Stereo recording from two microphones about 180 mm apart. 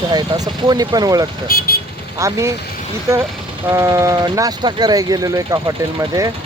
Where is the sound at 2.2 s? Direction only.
15° right (ahead or behind).